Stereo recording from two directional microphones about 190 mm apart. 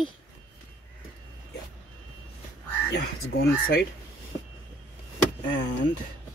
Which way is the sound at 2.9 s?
60° left (ahead or behind).